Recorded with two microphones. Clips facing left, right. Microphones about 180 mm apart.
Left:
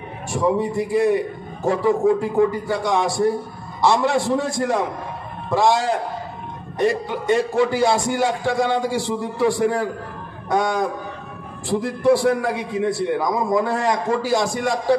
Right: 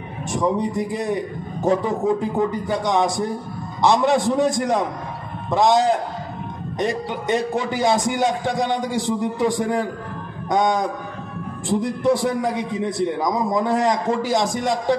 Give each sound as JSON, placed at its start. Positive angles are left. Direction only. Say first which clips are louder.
{"t": 0.3, "sound": "a man's voice", "louder": "left 1 dB", "side_deg": -20}